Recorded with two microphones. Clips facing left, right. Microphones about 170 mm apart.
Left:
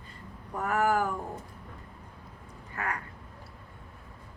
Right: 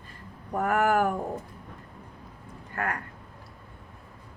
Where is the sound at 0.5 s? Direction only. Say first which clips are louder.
Right 3 dB; 60° right (ahead or behind).